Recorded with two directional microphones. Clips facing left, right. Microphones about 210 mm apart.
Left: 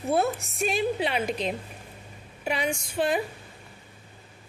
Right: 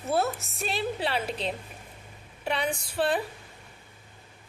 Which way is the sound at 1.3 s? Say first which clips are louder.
Left 3 dB; 30° right (ahead or behind).